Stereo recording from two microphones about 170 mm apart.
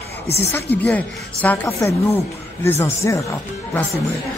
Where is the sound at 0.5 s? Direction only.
10° left (ahead or behind).